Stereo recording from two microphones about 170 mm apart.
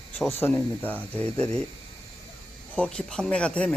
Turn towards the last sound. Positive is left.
turn(degrees=5)  # may be behind; listen again after turning